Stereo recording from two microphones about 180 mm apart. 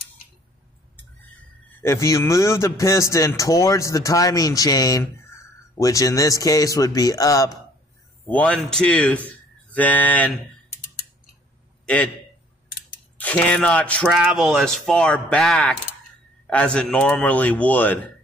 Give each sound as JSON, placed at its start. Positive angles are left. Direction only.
{"t": 1.7, "sound": "a man's voice", "side_deg": 15}
{"t": 8.3, "sound": "a man's voice", "side_deg": 5}
{"t": 11.8, "sound": "a sound", "side_deg": 10}
{"t": 13.2, "sound": "a man's voice", "side_deg": 5}
{"t": 14.0, "sound": "a man's voice", "side_deg": -5}